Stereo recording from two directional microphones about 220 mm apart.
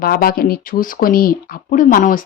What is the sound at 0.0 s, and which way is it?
Speech, 40° left (ahead or behind).